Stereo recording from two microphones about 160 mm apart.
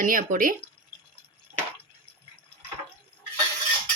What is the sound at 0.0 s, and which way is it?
Speech, 60° right (ahead or behind).